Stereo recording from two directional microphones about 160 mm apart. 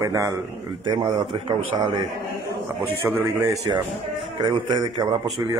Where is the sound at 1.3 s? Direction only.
35° right (ahead or behind).